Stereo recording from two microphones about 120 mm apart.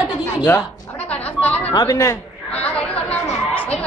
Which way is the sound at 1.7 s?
35° left (ahead or behind).